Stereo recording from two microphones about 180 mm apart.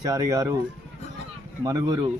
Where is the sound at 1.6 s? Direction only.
20° right (ahead or behind).